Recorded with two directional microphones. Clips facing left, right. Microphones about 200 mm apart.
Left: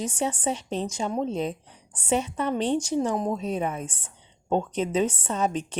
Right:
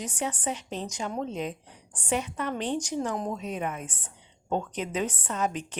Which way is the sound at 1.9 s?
25° left (ahead or behind).